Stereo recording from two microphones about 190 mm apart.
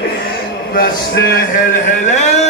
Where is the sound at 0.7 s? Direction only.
55° left (ahead or behind); by 2.3 s 40° left (ahead or behind).